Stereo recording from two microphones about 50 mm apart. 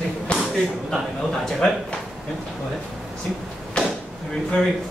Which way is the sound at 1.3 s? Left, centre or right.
Centre.